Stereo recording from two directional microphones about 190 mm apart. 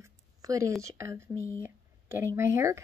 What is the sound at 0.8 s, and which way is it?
Speech, 15° right (ahead or behind).